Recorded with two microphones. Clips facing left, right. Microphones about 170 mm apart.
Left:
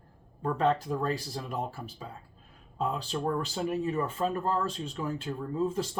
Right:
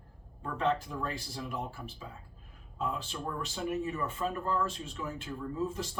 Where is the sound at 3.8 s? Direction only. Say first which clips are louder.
Left 5 dB; 35° left (ahead or behind).